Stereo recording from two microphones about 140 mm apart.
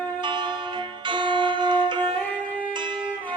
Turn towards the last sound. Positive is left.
turn(degrees=-35)  # may be behind; listen again after turning